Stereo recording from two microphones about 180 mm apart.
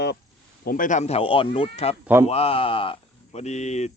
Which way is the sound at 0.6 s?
50° left (ahead or behind).